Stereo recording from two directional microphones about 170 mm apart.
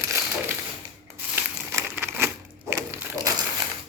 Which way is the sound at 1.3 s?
15° right (ahead or behind).